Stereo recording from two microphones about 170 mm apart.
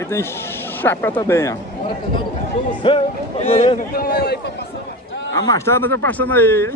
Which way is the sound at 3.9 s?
65° left (ahead or behind).